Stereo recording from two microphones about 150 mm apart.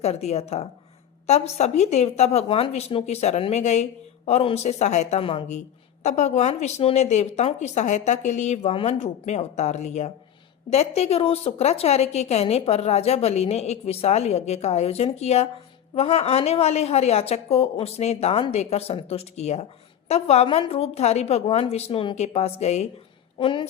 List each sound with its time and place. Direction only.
0.0 s a woman's voice: 45° left (ahead or behind)
23.4 s a woman's voice: 35° left (ahead or behind)